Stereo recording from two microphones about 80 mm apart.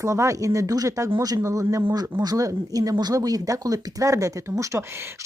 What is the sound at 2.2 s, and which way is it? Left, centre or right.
Speech, right.